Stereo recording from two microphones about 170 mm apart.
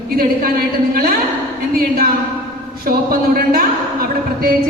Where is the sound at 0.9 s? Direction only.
60° right (ahead or behind).